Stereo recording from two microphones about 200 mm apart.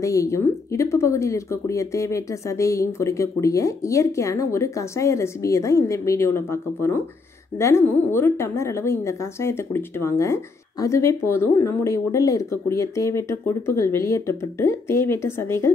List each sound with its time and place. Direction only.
0.0 s a woman's voice: 15° left (ahead or behind)